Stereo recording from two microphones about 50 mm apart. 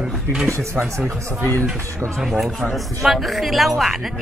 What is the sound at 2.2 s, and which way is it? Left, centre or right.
Speech, centre.